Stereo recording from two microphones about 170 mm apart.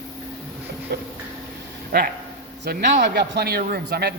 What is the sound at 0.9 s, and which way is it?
A man's voice, 65° right (ahead or behind).